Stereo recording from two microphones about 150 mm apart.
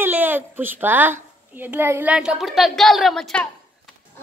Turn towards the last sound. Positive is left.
turn(degrees=5)  # may be behind; listen again after turning